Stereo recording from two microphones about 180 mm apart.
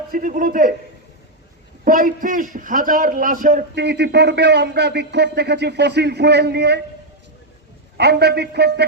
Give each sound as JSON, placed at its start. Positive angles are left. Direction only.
{"t": 0.1, "sound": "a man's voice", "side_deg": -50}
{"t": 1.8, "sound": "a man's voice", "side_deg": -50}
{"t": 3.8, "sound": "speech", "side_deg": -70}
{"t": 7.9, "sound": "a man's voice", "side_deg": -65}